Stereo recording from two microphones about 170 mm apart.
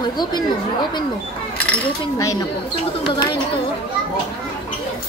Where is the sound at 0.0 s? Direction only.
25° left (ahead or behind).